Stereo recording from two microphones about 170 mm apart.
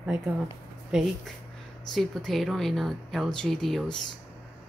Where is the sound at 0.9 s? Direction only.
5° right (ahead or behind).